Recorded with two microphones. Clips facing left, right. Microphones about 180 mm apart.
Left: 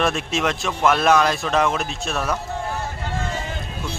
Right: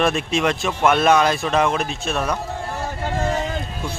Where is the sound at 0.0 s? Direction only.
Centre (ahead or behind).